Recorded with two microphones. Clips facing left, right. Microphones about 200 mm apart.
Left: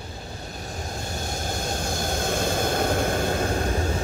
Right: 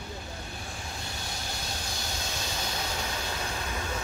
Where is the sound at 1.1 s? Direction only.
45° left (ahead or behind).